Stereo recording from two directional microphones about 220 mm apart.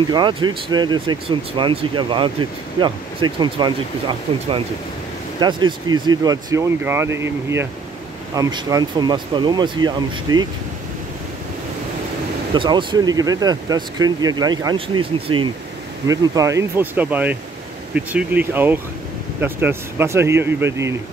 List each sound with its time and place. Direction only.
0.1 s speech: 20° right (ahead or behind)
12.5 s speech: 20° right (ahead or behind)